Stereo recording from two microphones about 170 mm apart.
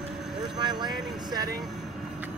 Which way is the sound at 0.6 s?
25° right (ahead or behind).